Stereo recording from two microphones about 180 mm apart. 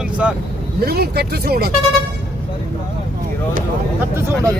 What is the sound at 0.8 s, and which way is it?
Speech, 60° right (ahead or behind).